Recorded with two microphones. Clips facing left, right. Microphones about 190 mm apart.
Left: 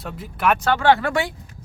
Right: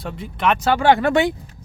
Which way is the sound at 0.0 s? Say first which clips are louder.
Right 1 dB; centre (ahead or behind).